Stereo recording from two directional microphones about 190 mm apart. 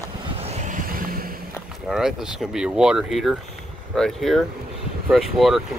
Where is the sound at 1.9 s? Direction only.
5° right (ahead or behind).